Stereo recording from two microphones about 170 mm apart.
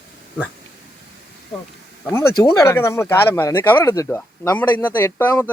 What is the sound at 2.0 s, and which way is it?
Speech, 15° left (ahead or behind).